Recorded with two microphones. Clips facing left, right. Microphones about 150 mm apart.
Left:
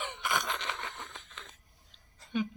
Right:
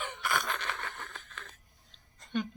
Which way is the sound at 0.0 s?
20° left (ahead or behind).